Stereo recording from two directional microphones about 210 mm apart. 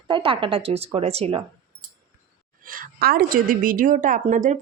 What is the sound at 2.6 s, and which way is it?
A woman's voice, 40° right (ahead or behind).